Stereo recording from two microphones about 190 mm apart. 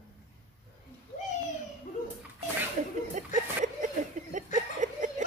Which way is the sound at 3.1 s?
40° right (ahead or behind).